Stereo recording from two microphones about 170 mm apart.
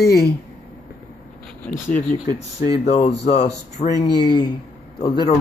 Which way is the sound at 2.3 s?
20° right (ahead or behind).